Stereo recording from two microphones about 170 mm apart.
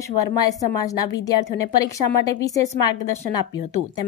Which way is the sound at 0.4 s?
20° left (ahead or behind).